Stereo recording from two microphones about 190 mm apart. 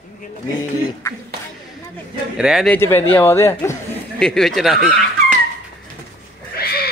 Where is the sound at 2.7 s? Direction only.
10° left (ahead or behind).